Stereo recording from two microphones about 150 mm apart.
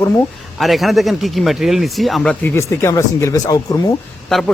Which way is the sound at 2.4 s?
15° left (ahead or behind).